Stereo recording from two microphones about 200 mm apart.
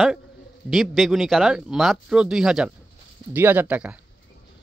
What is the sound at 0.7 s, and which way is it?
Speech, centre (ahead or behind).